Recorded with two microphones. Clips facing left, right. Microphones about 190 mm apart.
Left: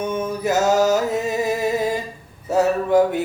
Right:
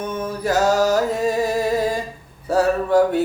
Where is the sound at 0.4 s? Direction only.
25° left (ahead or behind).